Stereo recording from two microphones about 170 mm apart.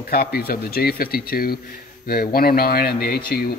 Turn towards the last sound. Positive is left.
turn(degrees=65)  # may be behind; listen again after turning